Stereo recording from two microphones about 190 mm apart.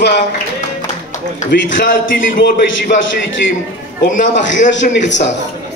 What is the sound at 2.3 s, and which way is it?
Speech, 70° left (ahead or behind).